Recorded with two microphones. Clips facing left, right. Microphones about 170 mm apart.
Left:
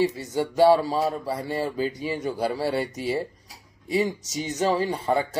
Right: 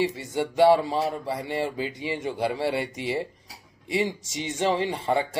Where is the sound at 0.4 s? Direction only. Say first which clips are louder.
Left 1 dB; 25° right (ahead or behind).